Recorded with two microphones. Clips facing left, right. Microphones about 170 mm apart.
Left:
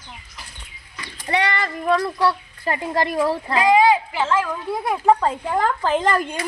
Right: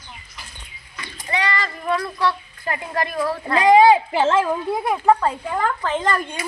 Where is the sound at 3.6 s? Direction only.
30° right (ahead or behind).